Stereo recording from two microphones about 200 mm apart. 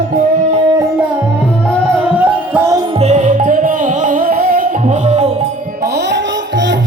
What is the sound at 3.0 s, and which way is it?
Music, 35° right (ahead or behind).